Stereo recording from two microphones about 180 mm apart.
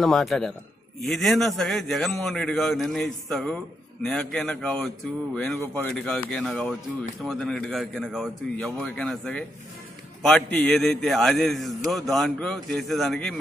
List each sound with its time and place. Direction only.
0.0 s a man's voice: centre (ahead or behind)